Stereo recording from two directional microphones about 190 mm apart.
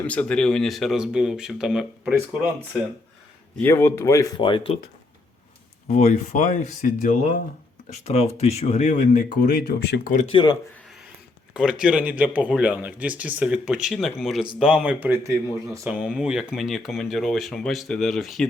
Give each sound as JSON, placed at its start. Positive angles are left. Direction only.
{"t": 0.0, "sound": "speech", "side_deg": 5}
{"t": 3.6, "sound": "speech", "side_deg": 10}
{"t": 5.9, "sound": "speech", "side_deg": 35}
{"t": 7.9, "sound": "speech", "side_deg": 35}
{"t": 10.1, "sound": "speech", "side_deg": 40}
{"t": 10.3, "sound": "speech", "side_deg": 20}
{"t": 11.5, "sound": "speech", "side_deg": -5}
{"t": 15.9, "sound": "speech", "side_deg": -5}